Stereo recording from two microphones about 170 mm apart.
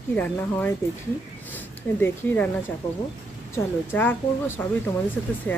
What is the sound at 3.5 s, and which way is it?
Speech, 15° left (ahead or behind).